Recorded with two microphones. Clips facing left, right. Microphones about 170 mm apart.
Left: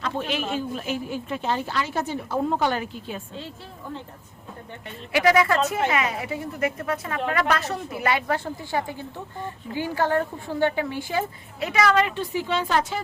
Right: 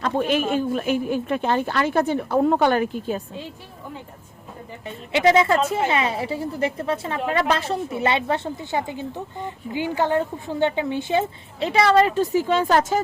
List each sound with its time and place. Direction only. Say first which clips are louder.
0.0 s a man's voice: right 6 dB; 50° right (ahead or behind)
5.1 s a woman's voice: right 2 dB; 25° right (ahead or behind); by 13.0 s 45° right (ahead or behind)